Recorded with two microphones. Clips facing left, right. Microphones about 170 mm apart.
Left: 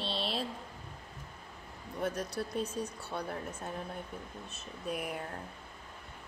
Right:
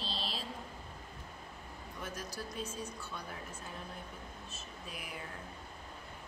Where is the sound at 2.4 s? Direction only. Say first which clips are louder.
Left 7 dB; 45° left (ahead or behind).